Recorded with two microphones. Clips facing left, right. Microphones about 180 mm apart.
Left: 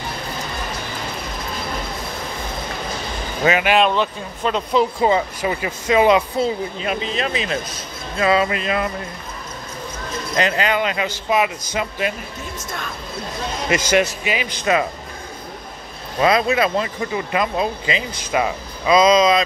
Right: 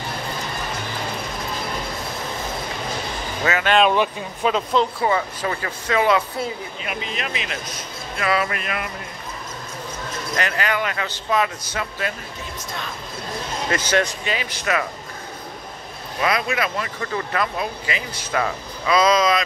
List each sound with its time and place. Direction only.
3.4 s speech: 15° left (ahead or behind)
3.9 s speech: 10° right (ahead or behind)
5.0 s speech: 20° left (ahead or behind)
10.3 s speech: 20° left (ahead or behind)
13.7 s speech: 10° left (ahead or behind)
16.2 s speech: 25° left (ahead or behind)